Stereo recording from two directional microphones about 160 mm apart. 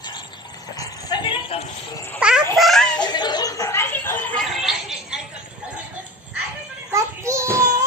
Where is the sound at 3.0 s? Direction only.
25° left (ahead or behind).